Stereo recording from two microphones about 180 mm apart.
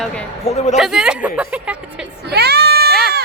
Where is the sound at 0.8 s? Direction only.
5° right (ahead or behind).